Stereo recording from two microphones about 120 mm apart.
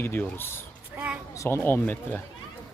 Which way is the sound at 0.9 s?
15° right (ahead or behind).